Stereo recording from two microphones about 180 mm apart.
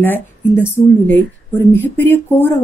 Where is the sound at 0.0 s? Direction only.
10° left (ahead or behind).